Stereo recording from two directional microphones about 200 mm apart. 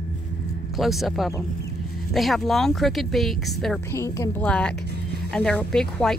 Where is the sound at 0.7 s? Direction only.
Centre (ahead or behind).